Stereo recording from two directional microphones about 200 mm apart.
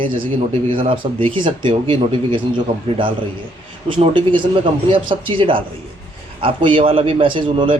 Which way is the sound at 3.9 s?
25° right (ahead or behind).